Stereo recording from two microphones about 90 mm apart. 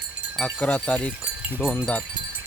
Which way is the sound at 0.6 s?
15° left (ahead or behind).